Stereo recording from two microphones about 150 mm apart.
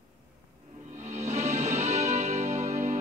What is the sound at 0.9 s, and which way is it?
Music, 50° right (ahead or behind).